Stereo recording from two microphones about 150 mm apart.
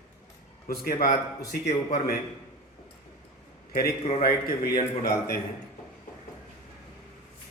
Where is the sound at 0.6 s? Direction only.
75° left (ahead or behind).